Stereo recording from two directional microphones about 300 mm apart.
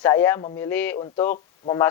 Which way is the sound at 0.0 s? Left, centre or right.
Centre.